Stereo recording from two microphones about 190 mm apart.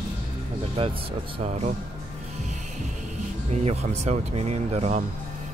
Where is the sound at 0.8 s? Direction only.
30° right (ahead or behind).